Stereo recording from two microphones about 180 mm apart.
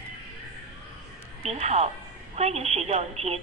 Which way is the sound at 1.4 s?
35° right (ahead or behind).